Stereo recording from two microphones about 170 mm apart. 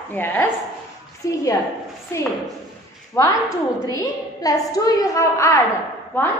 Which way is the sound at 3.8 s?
20° left (ahead or behind).